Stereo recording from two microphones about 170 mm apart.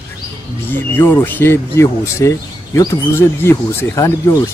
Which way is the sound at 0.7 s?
10° left (ahead or behind).